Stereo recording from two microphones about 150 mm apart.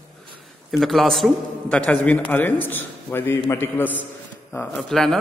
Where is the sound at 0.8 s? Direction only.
Centre (ahead or behind).